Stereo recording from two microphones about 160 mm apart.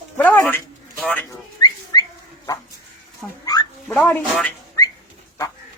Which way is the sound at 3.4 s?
25° left (ahead or behind).